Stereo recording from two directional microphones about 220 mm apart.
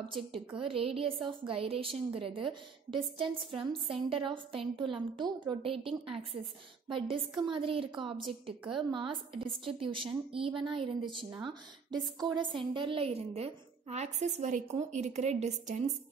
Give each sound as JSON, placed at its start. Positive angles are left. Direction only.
{"t": 0.1, "sound": "a woman's voice", "side_deg": -25}